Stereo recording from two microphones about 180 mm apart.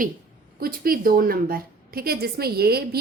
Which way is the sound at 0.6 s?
55° right (ahead or behind).